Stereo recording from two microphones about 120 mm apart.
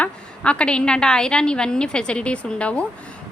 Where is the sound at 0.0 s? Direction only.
10° left (ahead or behind).